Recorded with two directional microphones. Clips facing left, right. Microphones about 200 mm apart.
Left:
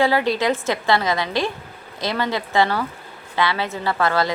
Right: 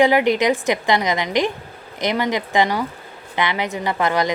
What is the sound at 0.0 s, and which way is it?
A woman's voice, 15° right (ahead or behind).